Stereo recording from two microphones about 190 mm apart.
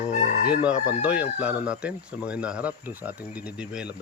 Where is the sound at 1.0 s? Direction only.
5° right (ahead or behind).